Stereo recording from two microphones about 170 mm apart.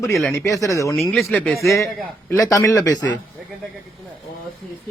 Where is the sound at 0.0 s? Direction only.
15° left (ahead or behind).